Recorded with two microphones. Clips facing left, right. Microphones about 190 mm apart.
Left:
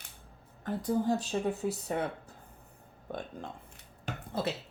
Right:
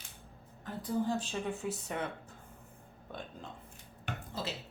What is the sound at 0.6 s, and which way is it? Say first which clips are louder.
Speech: left 4 dB; 45° left (ahead or behind).